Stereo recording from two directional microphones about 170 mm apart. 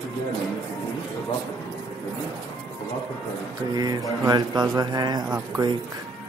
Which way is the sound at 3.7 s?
20° right (ahead or behind).